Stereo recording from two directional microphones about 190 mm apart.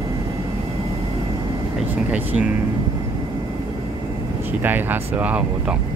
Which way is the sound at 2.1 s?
5° right (ahead or behind).